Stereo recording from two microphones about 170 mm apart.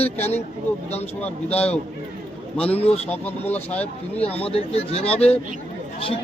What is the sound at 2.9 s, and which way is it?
Speech, 10° left (ahead or behind).